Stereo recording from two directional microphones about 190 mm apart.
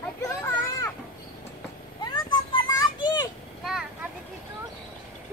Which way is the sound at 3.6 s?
5° right (ahead or behind).